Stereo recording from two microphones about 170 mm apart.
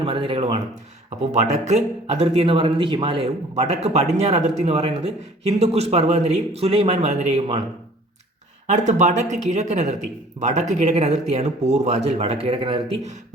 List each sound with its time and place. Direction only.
0.0 s speech: 30° right (ahead or behind)
1.3 s speech: 40° right (ahead or behind)
8.6 s speech: 45° right (ahead or behind)